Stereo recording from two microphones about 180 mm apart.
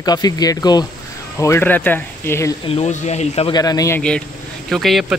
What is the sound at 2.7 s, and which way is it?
Speech, 35° left (ahead or behind).